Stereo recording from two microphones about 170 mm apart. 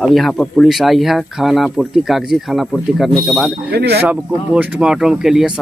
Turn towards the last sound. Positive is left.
turn(degrees=-5)  # may be behind; listen again after turning